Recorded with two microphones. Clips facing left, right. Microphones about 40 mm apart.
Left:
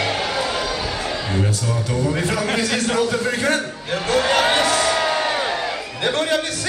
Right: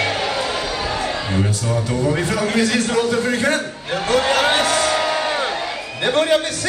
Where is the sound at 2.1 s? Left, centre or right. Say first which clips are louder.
Right 2 dB; centre.